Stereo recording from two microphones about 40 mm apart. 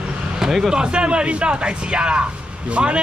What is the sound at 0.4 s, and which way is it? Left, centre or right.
A man's voice, centre.